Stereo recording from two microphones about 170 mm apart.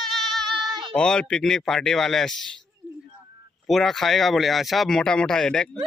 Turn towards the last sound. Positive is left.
turn(degrees=5)  # may be behind; listen again after turning